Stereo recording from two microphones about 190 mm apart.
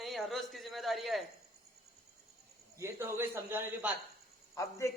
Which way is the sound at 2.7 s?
15° right (ahead or behind).